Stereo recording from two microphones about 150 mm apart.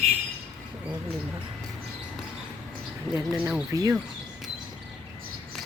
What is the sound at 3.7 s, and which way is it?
Speech, 25° right (ahead or behind).